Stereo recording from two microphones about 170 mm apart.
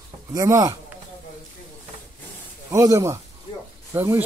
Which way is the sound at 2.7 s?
20° right (ahead or behind).